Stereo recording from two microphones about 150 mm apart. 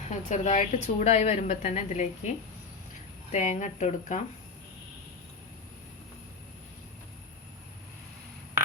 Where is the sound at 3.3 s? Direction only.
50° left (ahead or behind).